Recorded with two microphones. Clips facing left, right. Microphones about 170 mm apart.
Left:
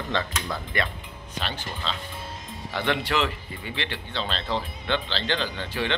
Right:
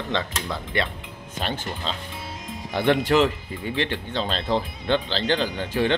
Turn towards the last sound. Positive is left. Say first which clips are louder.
# right 6 dB
turn(degrees=-45)  # may be behind; listen again after turning